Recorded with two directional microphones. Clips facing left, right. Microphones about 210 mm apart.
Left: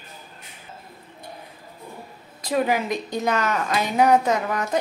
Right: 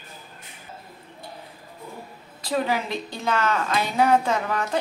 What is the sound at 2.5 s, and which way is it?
A woman's voice, 10° left (ahead or behind).